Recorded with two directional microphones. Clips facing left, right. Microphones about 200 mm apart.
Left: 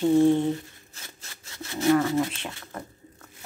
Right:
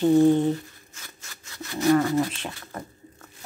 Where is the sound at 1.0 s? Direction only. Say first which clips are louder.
Even; 25° left (ahead or behind).